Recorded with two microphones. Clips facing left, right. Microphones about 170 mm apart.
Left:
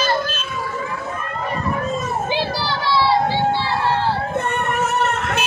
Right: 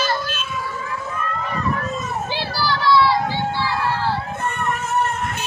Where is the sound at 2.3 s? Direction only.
25° left (ahead or behind).